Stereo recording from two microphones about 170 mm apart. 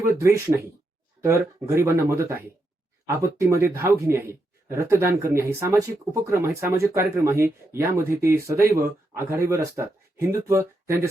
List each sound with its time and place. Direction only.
0.0 s speech: 15° right (ahead or behind)